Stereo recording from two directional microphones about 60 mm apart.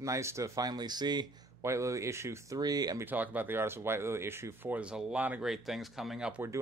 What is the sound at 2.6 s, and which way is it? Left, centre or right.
Speech, right.